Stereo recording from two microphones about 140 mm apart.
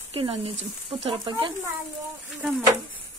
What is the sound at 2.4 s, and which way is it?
Speech, 10° right (ahead or behind).